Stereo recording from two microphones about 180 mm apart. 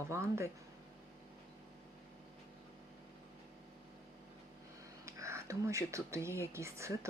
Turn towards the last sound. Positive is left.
turn(degrees=-15)  # may be behind; listen again after turning